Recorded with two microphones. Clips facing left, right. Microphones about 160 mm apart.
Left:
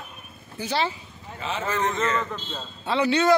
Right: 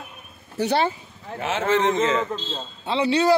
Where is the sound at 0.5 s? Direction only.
55° right (ahead or behind).